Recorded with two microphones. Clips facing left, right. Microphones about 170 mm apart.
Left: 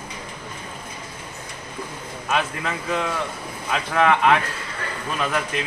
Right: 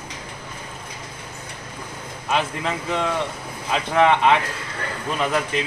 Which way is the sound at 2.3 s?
20° right (ahead or behind).